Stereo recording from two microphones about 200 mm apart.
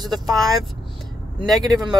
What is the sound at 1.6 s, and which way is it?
Speech, 20° right (ahead or behind).